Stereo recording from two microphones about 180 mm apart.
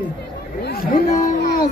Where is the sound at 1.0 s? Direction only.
40° left (ahead or behind).